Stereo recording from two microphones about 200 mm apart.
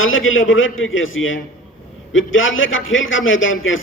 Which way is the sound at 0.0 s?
85° left.